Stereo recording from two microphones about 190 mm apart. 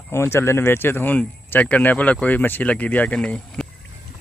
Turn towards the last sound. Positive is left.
turn(degrees=5)  # may be behind; listen again after turning